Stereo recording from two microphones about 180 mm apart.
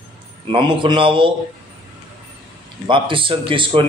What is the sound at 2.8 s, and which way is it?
A man's voice, 30° right (ahead or behind).